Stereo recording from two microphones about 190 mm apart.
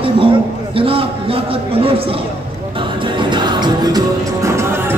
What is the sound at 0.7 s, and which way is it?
Speech, 30° right (ahead or behind).